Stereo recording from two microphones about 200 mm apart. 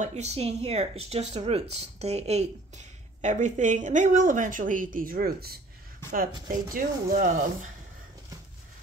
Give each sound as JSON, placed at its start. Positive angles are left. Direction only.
{"t": 0.0, "sound": "speech", "side_deg": -35}
{"t": 6.7, "sound": "speech", "side_deg": -40}